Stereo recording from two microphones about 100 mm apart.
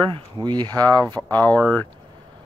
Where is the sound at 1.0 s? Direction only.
15° left (ahead or behind).